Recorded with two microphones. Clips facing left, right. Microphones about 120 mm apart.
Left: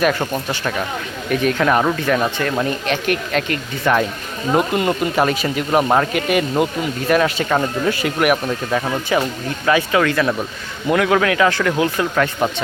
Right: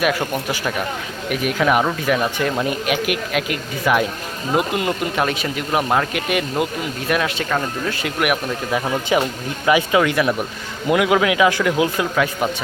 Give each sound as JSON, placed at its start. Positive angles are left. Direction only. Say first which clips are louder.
{"t": 0.0, "sound": "speech", "louder": "left 2 dB", "side_deg": -5}
{"t": 9.1, "sound": "speech", "louder": "even", "side_deg": -15}